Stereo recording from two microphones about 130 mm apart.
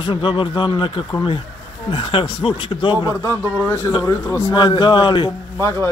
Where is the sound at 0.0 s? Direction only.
40° left (ahead or behind).